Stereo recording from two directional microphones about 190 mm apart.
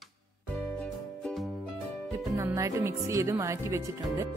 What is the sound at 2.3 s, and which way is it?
Music, 15° right (ahead or behind).